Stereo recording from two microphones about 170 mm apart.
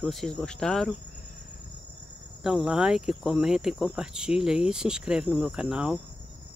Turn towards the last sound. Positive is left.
turn(degrees=-5)  # may be behind; listen again after turning